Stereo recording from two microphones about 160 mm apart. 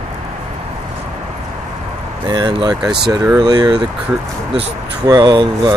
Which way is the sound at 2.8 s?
5° right (ahead or behind).